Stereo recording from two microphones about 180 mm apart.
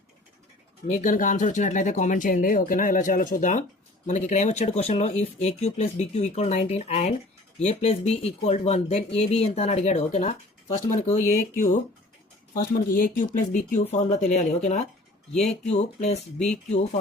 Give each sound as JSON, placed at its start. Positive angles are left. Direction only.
{"t": 0.9, "sound": "speech", "side_deg": 45}
{"t": 15.3, "sound": "speech", "side_deg": 5}
{"t": 15.6, "sound": "speech", "side_deg": 40}